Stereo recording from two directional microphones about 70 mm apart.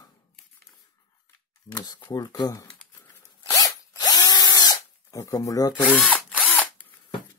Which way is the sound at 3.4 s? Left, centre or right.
Left.